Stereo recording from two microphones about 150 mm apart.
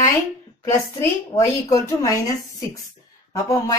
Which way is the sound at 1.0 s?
20° left (ahead or behind).